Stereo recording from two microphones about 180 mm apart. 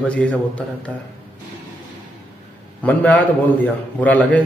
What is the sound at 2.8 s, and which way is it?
A man's voice, 10° left (ahead or behind).